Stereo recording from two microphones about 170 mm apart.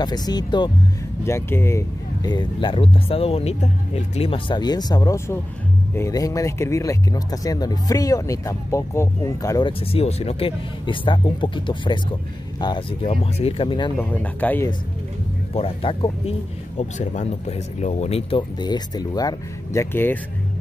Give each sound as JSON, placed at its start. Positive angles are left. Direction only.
{"t": 0.0, "sound": "speech", "side_deg": 25}
{"t": 9.7, "sound": "speech", "side_deg": 35}
{"t": 13.9, "sound": "speech", "side_deg": 10}
{"t": 15.5, "sound": "speech", "side_deg": 35}